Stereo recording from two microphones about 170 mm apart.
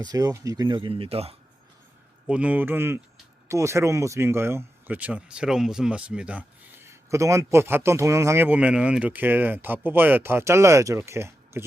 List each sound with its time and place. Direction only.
0.0 s speech: 20° right (ahead or behind)
2.2 s speech: 10° right (ahead or behind)